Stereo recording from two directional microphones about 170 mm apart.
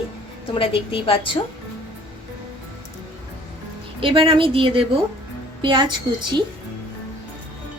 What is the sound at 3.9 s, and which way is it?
A woman's voice, 30° right (ahead or behind).